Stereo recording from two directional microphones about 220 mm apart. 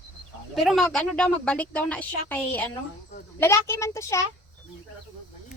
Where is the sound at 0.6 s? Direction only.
Centre (ahead or behind).